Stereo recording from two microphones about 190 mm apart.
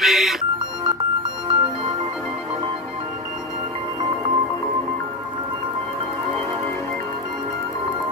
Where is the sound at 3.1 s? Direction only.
40° right (ahead or behind).